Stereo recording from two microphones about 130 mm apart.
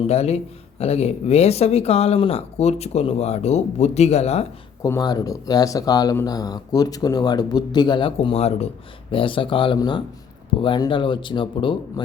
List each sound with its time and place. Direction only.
0.1 s speech: 55° left (ahead or behind)
4.9 s speech: 30° left (ahead or behind); by 8.7 s 55° left (ahead or behind)
9.1 s speech: 40° left (ahead or behind)